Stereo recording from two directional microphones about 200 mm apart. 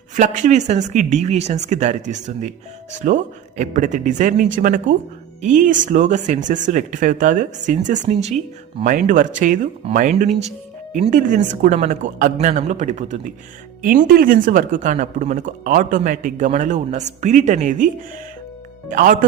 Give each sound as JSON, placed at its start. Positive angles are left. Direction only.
{"t": 0.2, "sound": "a woman's voice", "side_deg": -40}